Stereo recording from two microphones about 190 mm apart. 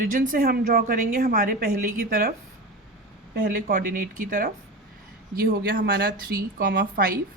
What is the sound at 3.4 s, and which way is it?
A woman's voice, 45° right (ahead or behind).